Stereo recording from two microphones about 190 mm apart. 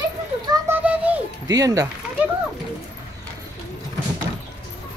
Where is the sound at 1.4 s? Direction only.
20° right (ahead or behind).